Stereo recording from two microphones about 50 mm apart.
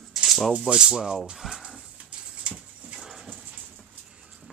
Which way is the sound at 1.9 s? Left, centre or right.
Right.